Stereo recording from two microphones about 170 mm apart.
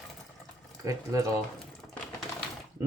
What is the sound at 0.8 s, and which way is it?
Speech, 20° right (ahead or behind).